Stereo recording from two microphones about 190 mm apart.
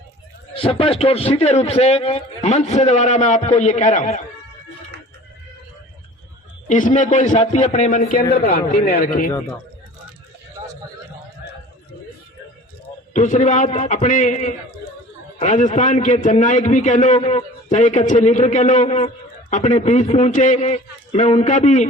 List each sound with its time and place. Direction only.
0.5 s a man's voice: 30° left (ahead or behind)
6.7 s a man's voice: 40° left (ahead or behind)
7.9 s speech: 45° left (ahead or behind)
13.1 s a man's voice: 40° left (ahead or behind)